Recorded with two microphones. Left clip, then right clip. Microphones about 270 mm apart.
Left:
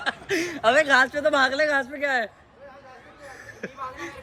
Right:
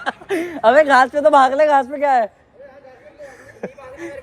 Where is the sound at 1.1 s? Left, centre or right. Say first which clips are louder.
Right 9 dB; centre.